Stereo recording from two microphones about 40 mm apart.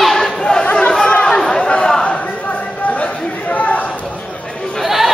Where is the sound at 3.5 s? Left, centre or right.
Left.